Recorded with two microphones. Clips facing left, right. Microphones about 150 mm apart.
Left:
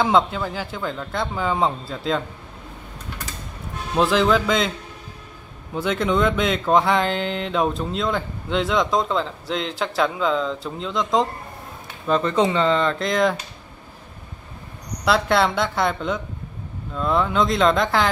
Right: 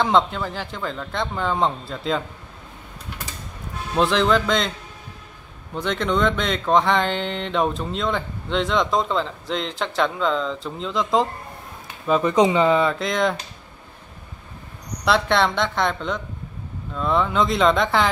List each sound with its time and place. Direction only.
0.0 s speech: 5° left (ahead or behind)
3.9 s speech: centre (ahead or behind)
5.8 s speech: 5° left (ahead or behind)
12.1 s speech: 10° right (ahead or behind)
15.0 s speech: centre (ahead or behind)